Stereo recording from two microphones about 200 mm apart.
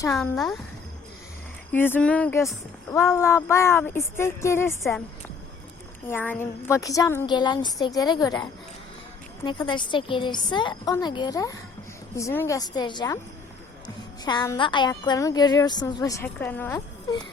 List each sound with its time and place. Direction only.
0.2 s speech: centre (ahead or behind)
1.7 s a woman's voice: 10° left (ahead or behind)
6.1 s a woman's voice: 10° left (ahead or behind)
14.3 s a woman's voice: 20° left (ahead or behind)